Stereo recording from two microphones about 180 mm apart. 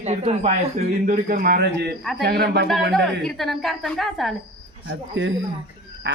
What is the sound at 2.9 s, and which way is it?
A woman's voice, centre (ahead or behind).